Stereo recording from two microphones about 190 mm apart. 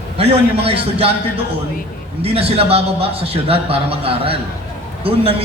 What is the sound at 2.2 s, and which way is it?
A man's voice, 30° right (ahead or behind).